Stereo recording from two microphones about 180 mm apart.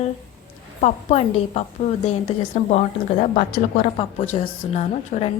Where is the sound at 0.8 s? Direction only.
35° left (ahead or behind).